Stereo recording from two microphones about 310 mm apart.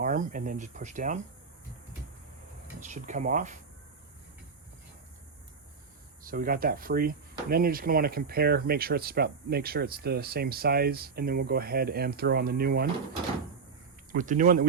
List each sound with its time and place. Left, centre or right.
0.0 s speech: right
2.8 s speech: right
6.2 s speech: right
14.1 s speech: right